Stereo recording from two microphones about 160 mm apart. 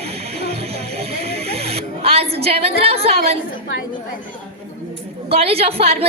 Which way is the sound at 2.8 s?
40° right (ahead or behind).